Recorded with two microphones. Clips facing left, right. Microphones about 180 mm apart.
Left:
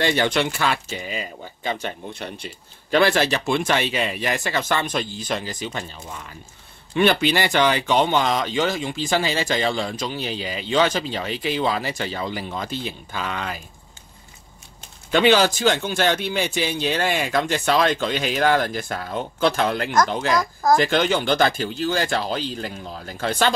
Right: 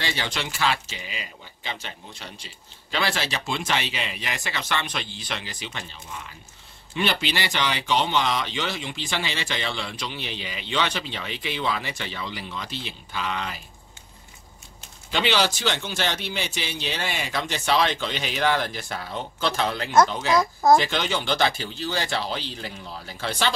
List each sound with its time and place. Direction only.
0.0 s speech: 55° left (ahead or behind)
7.0 s speech: 50° left (ahead or behind)
15.0 s speech: 50° left (ahead or behind)